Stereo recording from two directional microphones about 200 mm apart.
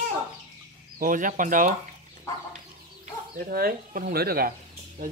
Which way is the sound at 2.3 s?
15° left (ahead or behind).